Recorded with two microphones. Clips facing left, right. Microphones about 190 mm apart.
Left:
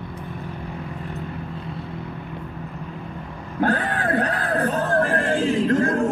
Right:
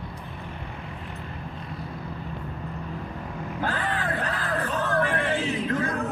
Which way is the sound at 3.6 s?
60° left (ahead or behind).